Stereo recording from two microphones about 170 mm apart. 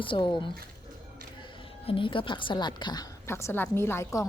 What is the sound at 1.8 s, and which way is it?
A woman's voice, 30° left (ahead or behind).